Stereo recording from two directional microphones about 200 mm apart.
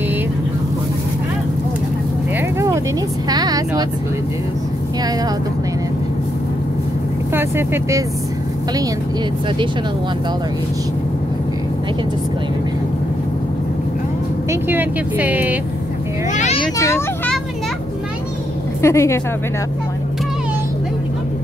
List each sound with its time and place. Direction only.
3.3 s speech: 20° right (ahead or behind)
7.3 s speech: 10° right (ahead or behind)
14.5 s speech: 10° right (ahead or behind)
16.7 s speech: 15° left (ahead or behind)
18.8 s speech: 15° left (ahead or behind)